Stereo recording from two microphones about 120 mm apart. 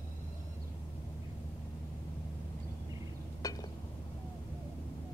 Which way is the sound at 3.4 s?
30° left (ahead or behind).